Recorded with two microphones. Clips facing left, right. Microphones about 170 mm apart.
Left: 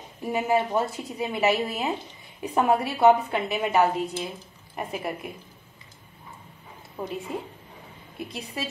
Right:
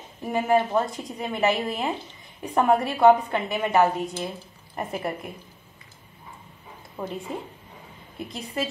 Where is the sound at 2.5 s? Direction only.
10° left (ahead or behind).